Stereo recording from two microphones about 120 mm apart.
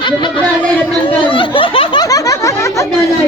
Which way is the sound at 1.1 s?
45° left (ahead or behind).